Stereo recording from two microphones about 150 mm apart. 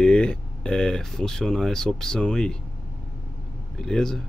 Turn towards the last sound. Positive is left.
turn(degrees=5)  # may be behind; listen again after turning